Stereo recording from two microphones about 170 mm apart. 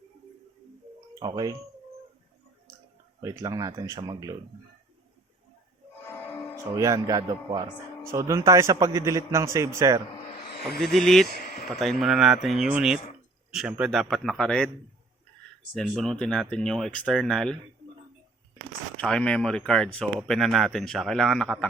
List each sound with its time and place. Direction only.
1.2 s speech: 25° right (ahead or behind)
3.2 s speech: 20° right (ahead or behind)
6.7 s speech: 20° right (ahead or behind)
10.8 s speech: centre (ahead or behind)
11.3 s a sound: 65° left (ahead or behind)
11.7 s speech: centre (ahead or behind)
15.7 s speech: centre (ahead or behind)
18.9 s speech: 5° left (ahead or behind)